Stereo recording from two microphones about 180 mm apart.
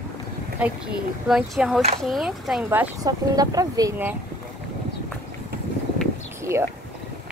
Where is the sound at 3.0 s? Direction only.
20° right (ahead or behind).